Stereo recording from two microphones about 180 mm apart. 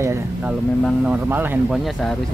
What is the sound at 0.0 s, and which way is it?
Speech, 15° right (ahead or behind).